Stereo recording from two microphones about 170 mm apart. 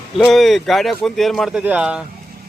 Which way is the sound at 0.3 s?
Centre (ahead or behind).